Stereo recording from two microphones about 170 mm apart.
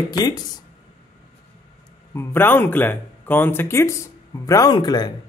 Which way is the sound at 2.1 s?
10° left (ahead or behind).